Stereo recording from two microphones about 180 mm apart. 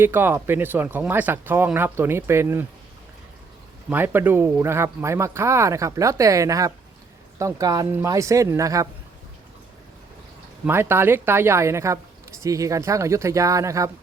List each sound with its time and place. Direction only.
0.0 s speech: 10° right (ahead or behind)
3.8 s speech: 10° right (ahead or behind)
10.7 s speech: 15° right (ahead or behind)